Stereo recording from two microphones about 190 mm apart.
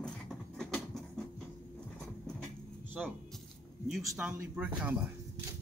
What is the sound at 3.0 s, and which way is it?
Speech, centre (ahead or behind).